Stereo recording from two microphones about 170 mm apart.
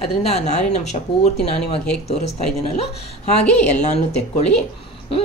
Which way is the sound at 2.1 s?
35° left (ahead or behind).